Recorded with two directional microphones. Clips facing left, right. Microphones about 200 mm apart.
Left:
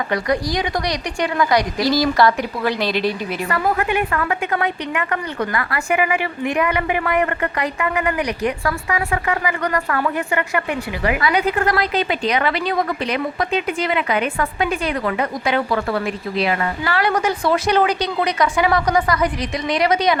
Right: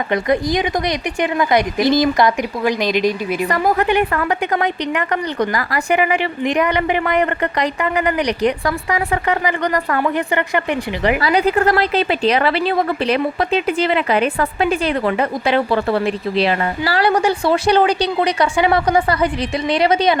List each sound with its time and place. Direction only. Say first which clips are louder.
0.1 s speech: right 5 dB; 20° right (ahead or behind)
3.5 s a woman's voice: right 3 dB; 35° right (ahead or behind)